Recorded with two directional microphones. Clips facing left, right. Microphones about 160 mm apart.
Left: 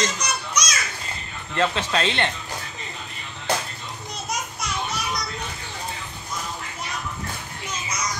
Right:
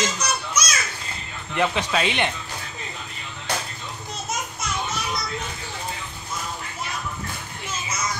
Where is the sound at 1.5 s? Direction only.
10° right (ahead or behind).